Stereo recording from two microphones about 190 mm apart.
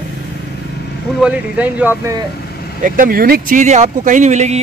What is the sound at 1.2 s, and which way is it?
Speech, 5° right (ahead or behind).